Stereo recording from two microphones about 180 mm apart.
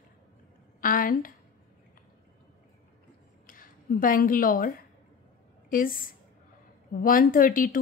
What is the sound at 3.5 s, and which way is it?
A woman's voice, 50° left (ahead or behind).